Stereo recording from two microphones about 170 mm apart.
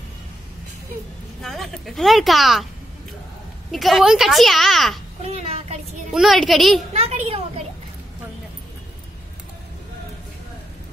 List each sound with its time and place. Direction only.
1.4 s a woman's voice: centre (ahead or behind)
3.7 s a woman's voice: centre (ahead or behind)
5.2 s a child's voice: 35° right (ahead or behind)
6.1 s a woman's voice: centre (ahead or behind)
6.9 s a child's voice: 35° right (ahead or behind)